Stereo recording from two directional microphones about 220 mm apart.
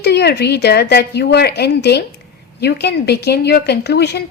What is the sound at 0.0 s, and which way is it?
A woman's voice, 50° left (ahead or behind).